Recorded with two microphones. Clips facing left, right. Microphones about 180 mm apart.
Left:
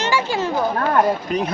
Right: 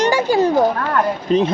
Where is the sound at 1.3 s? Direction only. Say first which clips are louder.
Right 7 dB; 30° right (ahead or behind).